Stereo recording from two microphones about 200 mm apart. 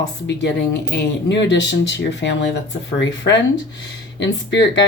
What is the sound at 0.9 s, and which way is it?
Speech, 60° left (ahead or behind).